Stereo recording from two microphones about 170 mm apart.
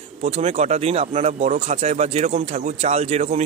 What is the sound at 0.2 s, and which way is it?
A man's voice, 40° right (ahead or behind).